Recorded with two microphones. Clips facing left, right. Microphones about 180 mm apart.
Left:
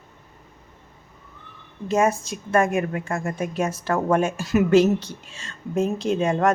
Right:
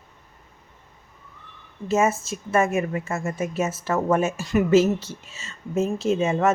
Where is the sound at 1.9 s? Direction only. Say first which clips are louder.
Left 1 dB; 5° right (ahead or behind).